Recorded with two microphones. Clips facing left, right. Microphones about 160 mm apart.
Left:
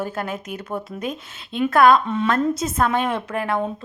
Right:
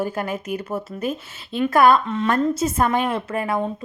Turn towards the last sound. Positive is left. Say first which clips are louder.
# even
turn(degrees=-5)  # may be behind; listen again after turning